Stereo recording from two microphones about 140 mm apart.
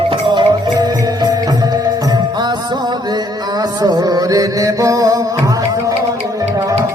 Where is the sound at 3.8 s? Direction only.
25° right (ahead or behind).